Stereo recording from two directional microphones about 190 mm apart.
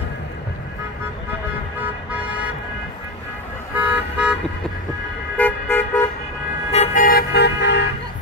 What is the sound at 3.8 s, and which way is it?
Toot, 5° right (ahead or behind).